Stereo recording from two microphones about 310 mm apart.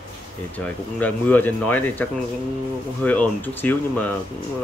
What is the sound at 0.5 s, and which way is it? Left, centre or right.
Speech, centre.